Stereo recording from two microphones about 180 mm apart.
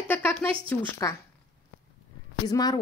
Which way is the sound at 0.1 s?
10° left (ahead or behind).